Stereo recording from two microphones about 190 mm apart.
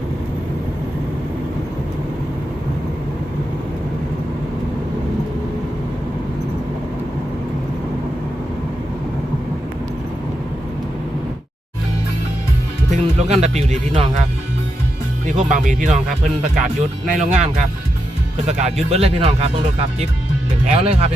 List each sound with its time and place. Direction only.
12.9 s music: 35° right (ahead or behind)
13.6 s speech: 35° right (ahead or behind)
15.3 s speech: 40° right (ahead or behind)
20.7 s speech: 30° right (ahead or behind)